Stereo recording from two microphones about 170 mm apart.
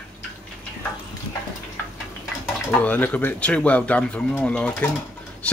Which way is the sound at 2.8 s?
10° left (ahead or behind).